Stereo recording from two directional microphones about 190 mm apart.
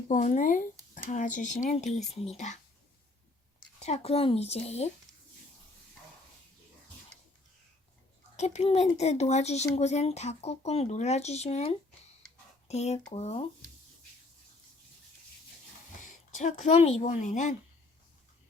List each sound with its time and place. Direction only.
0.1 s speech: 40° left (ahead or behind)
3.8 s speech: 35° left (ahead or behind)
8.4 s speech: 35° left (ahead or behind)
16.0 s a woman's voice: 40° left (ahead or behind)